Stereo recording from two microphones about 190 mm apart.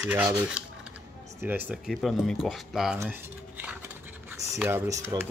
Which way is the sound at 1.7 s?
Centre (ahead or behind).